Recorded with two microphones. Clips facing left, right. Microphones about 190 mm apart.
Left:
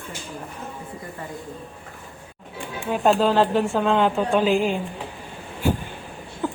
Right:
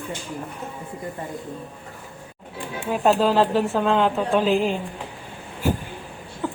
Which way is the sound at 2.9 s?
Centre (ahead or behind).